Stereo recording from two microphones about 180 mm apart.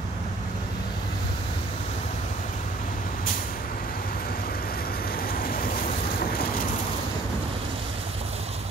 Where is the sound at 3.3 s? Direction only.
50° left (ahead or behind).